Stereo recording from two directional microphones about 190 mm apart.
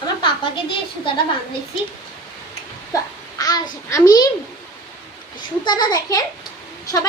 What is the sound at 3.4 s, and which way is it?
Speech, 20° left (ahead or behind).